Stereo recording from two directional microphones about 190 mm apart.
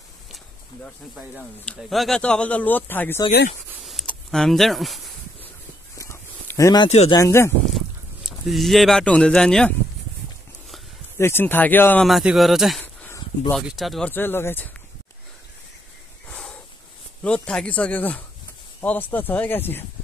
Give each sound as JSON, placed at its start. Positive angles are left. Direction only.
{"t": 1.7, "sound": "speech", "side_deg": 0}
{"t": 3.8, "sound": "a sound", "side_deg": 5}
{"t": 5.9, "sound": "a sound", "side_deg": 15}
{"t": 6.9, "sound": "speech", "side_deg": 35}
{"t": 7.2, "sound": "speech", "side_deg": 15}
{"t": 8.3, "sound": "speech", "side_deg": 0}
{"t": 11.1, "sound": "speech", "side_deg": 10}
{"t": 12.1, "sound": "speech", "side_deg": 0}
{"t": 12.8, "sound": "a sound", "side_deg": 10}
{"t": 13.5, "sound": "speech", "side_deg": 0}
{"t": 16.3, "sound": "a sound", "side_deg": 5}
{"t": 17.2, "sound": "speech", "side_deg": 5}